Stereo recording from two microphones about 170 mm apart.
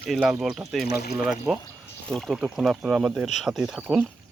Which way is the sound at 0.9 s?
65° left (ahead or behind).